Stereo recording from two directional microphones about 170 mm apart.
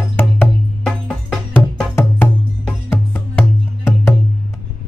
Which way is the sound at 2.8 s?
15° left (ahead or behind).